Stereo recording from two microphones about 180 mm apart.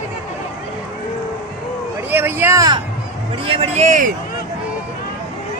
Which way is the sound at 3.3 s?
30° right (ahead or behind).